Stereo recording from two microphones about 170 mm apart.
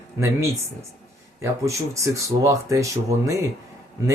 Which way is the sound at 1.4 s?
20° right (ahead or behind).